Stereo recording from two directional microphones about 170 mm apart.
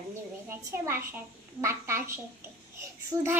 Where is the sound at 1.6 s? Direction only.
15° right (ahead or behind).